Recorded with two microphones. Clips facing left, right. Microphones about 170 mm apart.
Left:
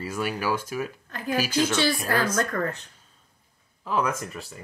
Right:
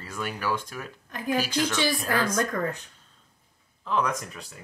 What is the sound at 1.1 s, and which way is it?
Speech, 15° right (ahead or behind).